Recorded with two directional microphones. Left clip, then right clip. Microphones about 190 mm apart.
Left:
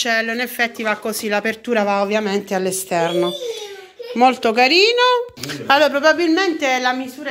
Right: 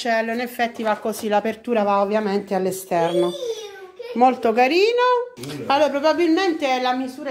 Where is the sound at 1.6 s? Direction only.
5° left (ahead or behind).